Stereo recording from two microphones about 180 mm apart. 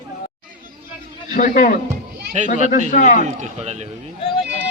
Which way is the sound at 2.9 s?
45° left (ahead or behind).